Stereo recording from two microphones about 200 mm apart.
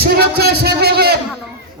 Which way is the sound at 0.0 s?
50° right (ahead or behind).